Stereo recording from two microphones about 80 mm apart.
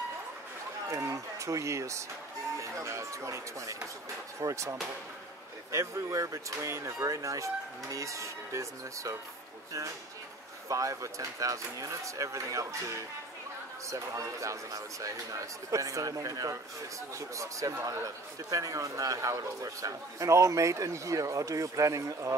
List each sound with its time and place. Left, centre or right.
0.8 s speech: right
10.7 s a man's voice: right